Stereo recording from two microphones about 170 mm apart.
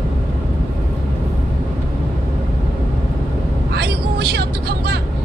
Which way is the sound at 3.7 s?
70° right (ahead or behind).